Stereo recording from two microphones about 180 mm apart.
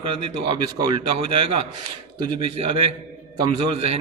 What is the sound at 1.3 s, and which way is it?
A man's voice, 30° right (ahead or behind).